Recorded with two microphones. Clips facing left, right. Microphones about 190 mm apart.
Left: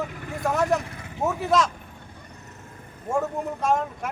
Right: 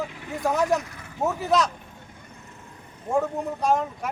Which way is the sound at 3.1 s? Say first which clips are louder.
Right 1 dB; centre (ahead or behind).